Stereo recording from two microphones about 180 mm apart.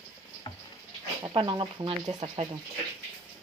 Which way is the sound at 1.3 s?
25° right (ahead or behind).